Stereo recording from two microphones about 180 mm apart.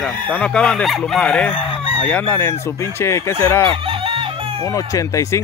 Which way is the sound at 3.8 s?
30° right (ahead or behind).